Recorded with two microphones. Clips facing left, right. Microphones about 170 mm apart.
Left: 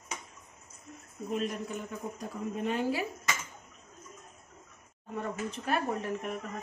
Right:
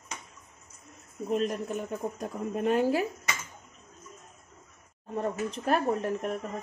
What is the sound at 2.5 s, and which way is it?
Speech, 50° right (ahead or behind).